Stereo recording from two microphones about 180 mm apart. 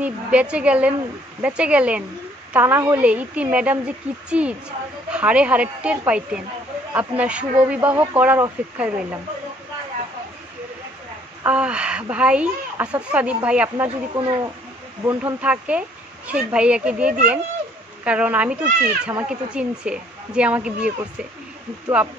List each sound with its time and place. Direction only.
0.0 s a woman's voice: 5° right (ahead or behind)
11.4 s a woman's voice: 5° right (ahead or behind)
13.8 s speech: 25° right (ahead or behind)
15.0 s a woman's voice: 10° right (ahead or behind)